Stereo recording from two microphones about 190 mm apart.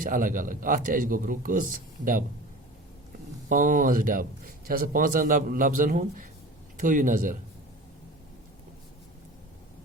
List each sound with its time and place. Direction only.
0.0 s speech: 45° right (ahead or behind)
3.5 s speech: 45° right (ahead or behind)